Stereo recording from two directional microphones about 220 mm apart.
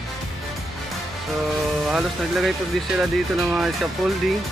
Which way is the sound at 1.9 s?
Centre (ahead or behind).